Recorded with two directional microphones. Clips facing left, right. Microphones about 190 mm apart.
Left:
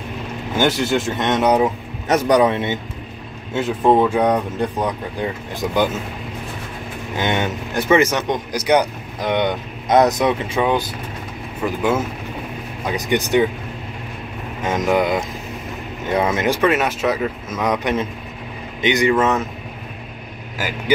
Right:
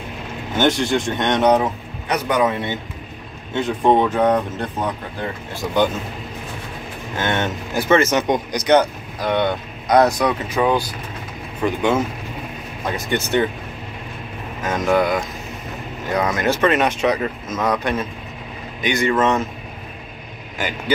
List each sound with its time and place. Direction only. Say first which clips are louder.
0.6 s speech: even; 5° left (ahead or behind)
2.0 s a man's voice: left 4 dB; 40° left (ahead or behind)
3.5 s speech: left 1 dB; 5° left (ahead or behind)
7.2 s speech: left 1 dB; 15° left (ahead or behind)
8.1 s speech: right 3 dB; 5° right (ahead or behind)
8.5 s speech: left 1 dB; 10° left (ahead or behind)
11.6 s speech: right 1 dB; 5° left (ahead or behind)
12.8 s speech: left 2 dB; 15° left (ahead or behind)
14.6 s speech: even; 20° left (ahead or behind)
16.4 s speech: even; 10° left (ahead or behind)
20.5 s speech: even; 5° left (ahead or behind)